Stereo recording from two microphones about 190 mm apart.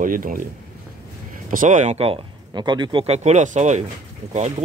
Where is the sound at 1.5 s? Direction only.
40° right (ahead or behind).